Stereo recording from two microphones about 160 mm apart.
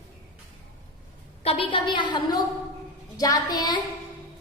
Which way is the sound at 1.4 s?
35° left (ahead or behind).